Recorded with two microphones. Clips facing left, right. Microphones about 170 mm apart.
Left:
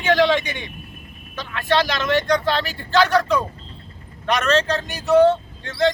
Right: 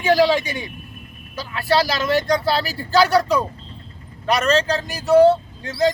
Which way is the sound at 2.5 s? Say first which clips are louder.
Right 1 dB; 40° right (ahead or behind).